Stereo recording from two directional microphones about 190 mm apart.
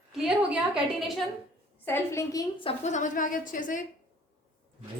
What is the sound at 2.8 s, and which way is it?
A woman's voice, 40° left (ahead or behind).